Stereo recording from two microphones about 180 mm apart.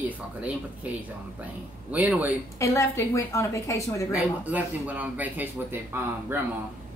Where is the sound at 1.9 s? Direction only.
5° right (ahead or behind).